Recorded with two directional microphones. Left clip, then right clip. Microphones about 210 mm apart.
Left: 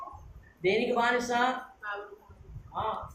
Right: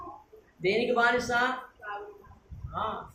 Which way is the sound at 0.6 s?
20° right (ahead or behind).